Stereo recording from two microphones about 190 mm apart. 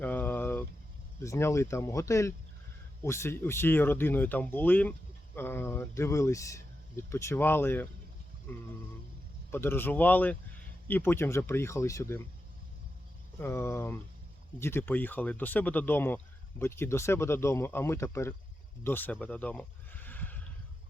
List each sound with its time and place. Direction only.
0.0 s a sound: 10° left (ahead or behind)
1.2 s speech: 15° left (ahead or behind)
9.5 s speech: 10° left (ahead or behind)
13.4 s speech: 15° left (ahead or behind)